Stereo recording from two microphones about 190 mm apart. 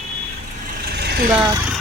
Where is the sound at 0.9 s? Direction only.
60° right (ahead or behind).